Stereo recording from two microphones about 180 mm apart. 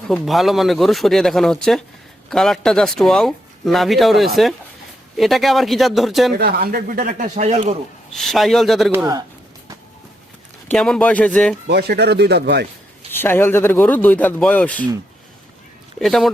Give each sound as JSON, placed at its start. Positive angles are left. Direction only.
{"t": 0.1, "sound": "speech", "side_deg": 0}
{"t": 6.4, "sound": "speech", "side_deg": -60}
{"t": 8.1, "sound": "speech", "side_deg": 0}
{"t": 10.7, "sound": "a man's voice", "side_deg": 5}
{"t": 11.7, "sound": "speech", "side_deg": -65}
{"t": 13.1, "sound": "a man's voice", "side_deg": 10}
{"t": 16.0, "sound": "speech", "side_deg": 0}